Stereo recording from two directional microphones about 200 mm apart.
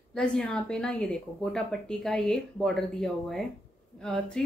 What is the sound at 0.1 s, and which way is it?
Speech, 5° left (ahead or behind).